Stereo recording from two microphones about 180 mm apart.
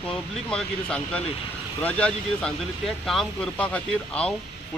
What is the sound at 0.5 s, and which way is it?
Speech, 5° left (ahead or behind).